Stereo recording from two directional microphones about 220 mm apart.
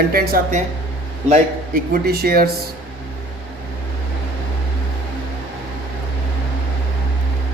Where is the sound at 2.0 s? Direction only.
45° right (ahead or behind).